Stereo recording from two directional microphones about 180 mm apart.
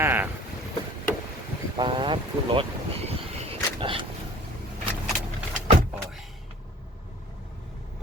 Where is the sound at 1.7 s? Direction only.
25° right (ahead or behind).